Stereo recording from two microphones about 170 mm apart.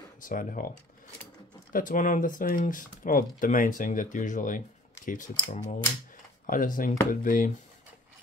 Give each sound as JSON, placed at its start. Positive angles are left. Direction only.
{"t": 0.2, "sound": "speech", "side_deg": 50}
{"t": 1.7, "sound": "speech", "side_deg": 50}